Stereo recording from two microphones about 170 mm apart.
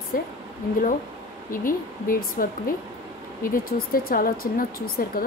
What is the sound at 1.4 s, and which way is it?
Speech, 55° left (ahead or behind).